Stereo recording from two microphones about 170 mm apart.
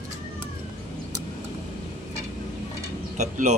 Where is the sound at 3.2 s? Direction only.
45° right (ahead or behind).